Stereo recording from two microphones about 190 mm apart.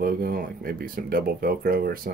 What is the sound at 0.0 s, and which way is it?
Speech, 50° right (ahead or behind).